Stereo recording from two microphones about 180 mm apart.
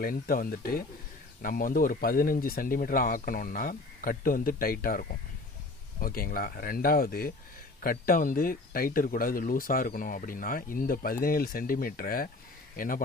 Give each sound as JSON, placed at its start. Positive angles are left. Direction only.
{"t": 0.0, "sound": "speech", "side_deg": 55}